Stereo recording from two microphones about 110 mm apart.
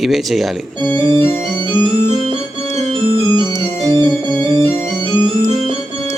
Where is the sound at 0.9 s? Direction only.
45° right (ahead or behind).